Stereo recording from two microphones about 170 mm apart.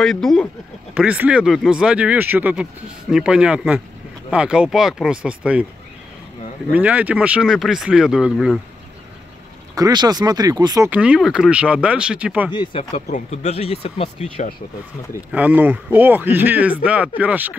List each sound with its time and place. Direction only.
0.0 s speech: centre (ahead or behind)
0.9 s speech: 10° right (ahead or behind)
6.7 s speech: 10° right (ahead or behind)
9.8 s speech: 20° right (ahead or behind)
10.9 s speech: 5° right (ahead or behind)
12.4 s speech: 25° left (ahead or behind)
12.9 s speech: 40° left (ahead or behind)
15.3 s speech: 10° right (ahead or behind)